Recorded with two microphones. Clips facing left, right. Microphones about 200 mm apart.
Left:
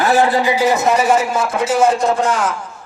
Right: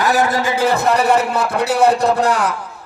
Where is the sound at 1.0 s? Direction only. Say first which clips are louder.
Even; 60° right (ahead or behind).